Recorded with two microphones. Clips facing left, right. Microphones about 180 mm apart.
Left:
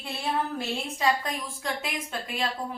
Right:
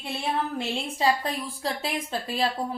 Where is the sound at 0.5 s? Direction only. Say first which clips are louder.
Right 2 dB; 30° right (ahead or behind).